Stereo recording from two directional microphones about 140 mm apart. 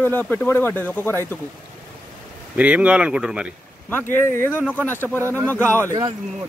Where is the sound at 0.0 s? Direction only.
15° left (ahead or behind).